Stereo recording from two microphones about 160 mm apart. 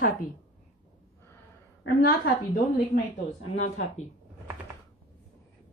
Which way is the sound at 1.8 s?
70° left (ahead or behind).